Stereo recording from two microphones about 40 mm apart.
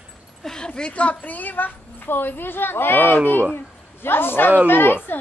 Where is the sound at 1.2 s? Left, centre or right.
Left.